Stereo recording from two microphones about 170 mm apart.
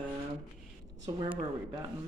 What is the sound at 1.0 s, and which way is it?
Speech, 30° right (ahead or behind).